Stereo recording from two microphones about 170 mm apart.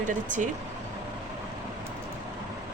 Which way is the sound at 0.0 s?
50° right (ahead or behind).